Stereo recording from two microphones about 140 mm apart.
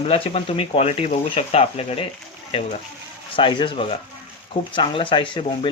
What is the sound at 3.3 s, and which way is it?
Speech, 35° left (ahead or behind).